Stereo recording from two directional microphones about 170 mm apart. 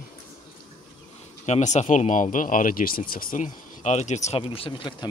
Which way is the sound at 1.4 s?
40° left (ahead or behind).